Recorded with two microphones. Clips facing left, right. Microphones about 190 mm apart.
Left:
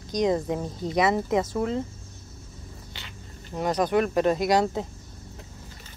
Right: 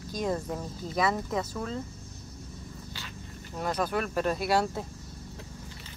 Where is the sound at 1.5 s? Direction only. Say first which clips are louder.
Left 8 dB; 20° left (ahead or behind).